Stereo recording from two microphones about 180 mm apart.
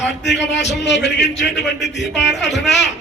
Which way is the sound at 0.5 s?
75° left (ahead or behind).